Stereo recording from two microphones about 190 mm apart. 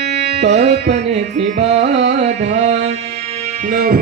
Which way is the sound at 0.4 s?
35° right (ahead or behind).